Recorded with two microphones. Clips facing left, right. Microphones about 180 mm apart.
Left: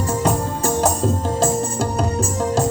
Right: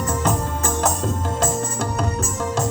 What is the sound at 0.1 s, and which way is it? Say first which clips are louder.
Music: left 3 dB; 30° left (ahead or behind).